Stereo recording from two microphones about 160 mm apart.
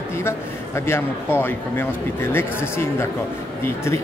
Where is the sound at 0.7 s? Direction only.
15° left (ahead or behind).